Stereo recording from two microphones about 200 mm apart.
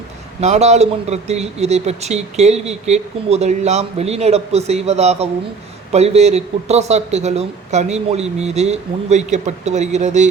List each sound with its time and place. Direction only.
0.3 s speech: 35° right (ahead or behind)